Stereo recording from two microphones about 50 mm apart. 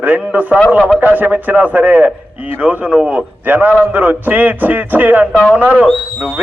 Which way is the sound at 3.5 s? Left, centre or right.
Right.